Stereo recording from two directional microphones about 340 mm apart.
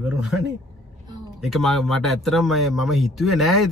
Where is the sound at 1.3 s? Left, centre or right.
Centre.